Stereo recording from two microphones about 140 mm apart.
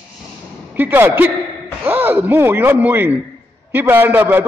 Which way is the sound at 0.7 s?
15° right (ahead or behind).